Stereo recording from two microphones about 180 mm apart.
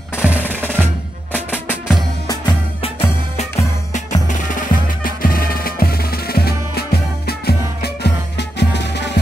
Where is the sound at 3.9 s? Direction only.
40° left (ahead or behind); by 9.2 s 70° left (ahead or behind).